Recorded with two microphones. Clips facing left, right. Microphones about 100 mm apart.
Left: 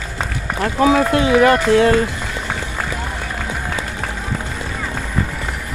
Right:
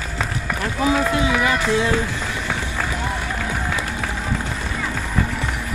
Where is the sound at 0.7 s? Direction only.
60° left (ahead or behind).